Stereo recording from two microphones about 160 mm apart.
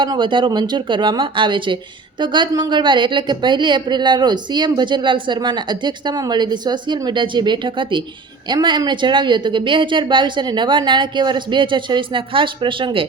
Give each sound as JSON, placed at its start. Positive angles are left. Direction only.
{"t": 0.0, "sound": "speech", "side_deg": -30}